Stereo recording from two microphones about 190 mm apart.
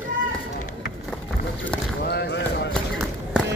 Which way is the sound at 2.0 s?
60° left (ahead or behind).